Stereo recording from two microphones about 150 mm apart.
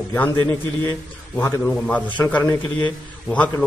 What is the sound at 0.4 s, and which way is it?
A man's voice, 10° left (ahead or behind).